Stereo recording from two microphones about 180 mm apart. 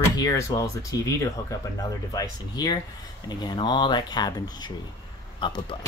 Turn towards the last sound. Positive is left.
turn(degrees=25)  # may be behind; listen again after turning